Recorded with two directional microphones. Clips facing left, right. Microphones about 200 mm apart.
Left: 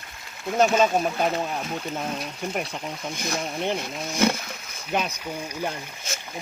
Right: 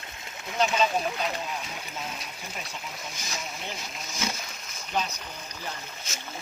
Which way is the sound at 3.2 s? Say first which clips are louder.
Left 11 dB; 60° left (ahead or behind).